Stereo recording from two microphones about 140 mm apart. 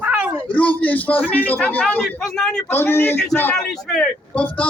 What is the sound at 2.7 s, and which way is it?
A man's voice, 15° left (ahead or behind).